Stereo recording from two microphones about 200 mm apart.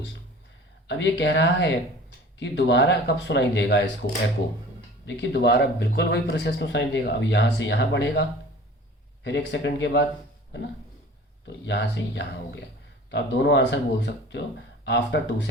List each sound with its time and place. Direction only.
0.9 s speech: 60° left (ahead or behind)
11.4 s speech: 60° left (ahead or behind)